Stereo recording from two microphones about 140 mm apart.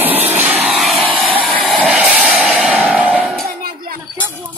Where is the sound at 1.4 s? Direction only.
Centre (ahead or behind).